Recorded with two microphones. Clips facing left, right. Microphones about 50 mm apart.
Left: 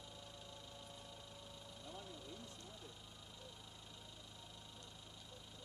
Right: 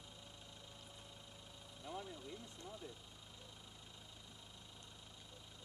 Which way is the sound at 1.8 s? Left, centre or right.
Right.